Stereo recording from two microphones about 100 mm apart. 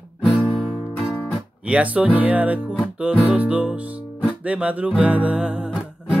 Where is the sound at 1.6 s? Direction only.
10° right (ahead or behind).